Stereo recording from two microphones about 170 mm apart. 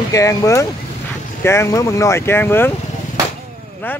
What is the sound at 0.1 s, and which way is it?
Speech, 20° left (ahead or behind).